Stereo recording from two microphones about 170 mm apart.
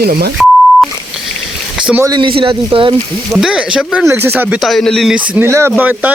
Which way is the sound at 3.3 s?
5° right (ahead or behind).